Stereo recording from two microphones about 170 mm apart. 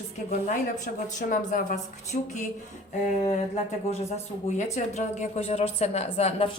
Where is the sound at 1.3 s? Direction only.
50° left (ahead or behind).